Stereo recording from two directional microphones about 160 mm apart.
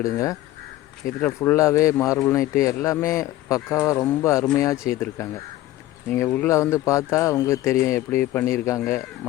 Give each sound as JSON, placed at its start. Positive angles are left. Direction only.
{"t": 0.0, "sound": "speech", "side_deg": 20}